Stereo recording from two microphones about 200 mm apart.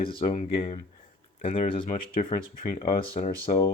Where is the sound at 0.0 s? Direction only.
25° left (ahead or behind).